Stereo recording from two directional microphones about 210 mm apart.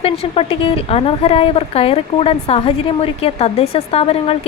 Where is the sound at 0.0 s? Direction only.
30° left (ahead or behind).